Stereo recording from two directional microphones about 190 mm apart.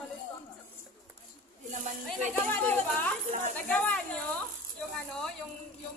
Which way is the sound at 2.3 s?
10° left (ahead or behind).